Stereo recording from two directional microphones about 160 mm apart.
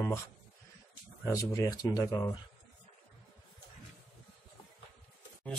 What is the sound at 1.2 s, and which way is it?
Speech, 20° left (ahead or behind).